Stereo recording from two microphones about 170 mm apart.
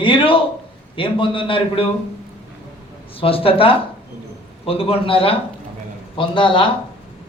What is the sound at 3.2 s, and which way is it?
A man's voice, 35° left (ahead or behind).